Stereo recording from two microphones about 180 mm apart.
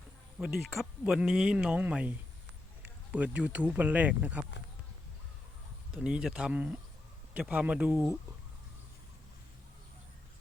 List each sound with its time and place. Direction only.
0.3 s speech: centre (ahead or behind)
5.9 s speech: 5° right (ahead or behind)